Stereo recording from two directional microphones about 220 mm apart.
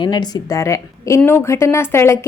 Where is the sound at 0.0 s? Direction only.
20° left (ahead or behind).